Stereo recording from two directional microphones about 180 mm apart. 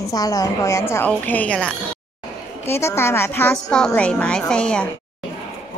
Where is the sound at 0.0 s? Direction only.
20° left (ahead or behind).